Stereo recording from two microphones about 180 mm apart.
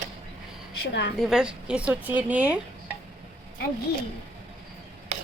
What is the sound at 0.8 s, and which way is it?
Speech, 70° left (ahead or behind).